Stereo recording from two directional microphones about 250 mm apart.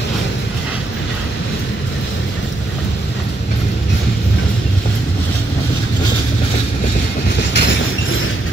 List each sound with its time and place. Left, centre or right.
7.5 s train: left